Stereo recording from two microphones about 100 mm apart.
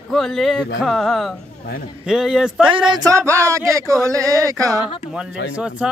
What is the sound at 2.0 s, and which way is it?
Speech, 5° right (ahead or behind).